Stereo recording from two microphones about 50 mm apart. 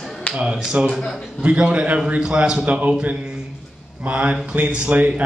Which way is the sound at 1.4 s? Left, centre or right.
Right.